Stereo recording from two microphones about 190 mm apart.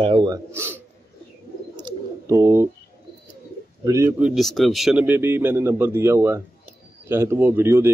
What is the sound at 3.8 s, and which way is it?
Speech, 15° right (ahead or behind).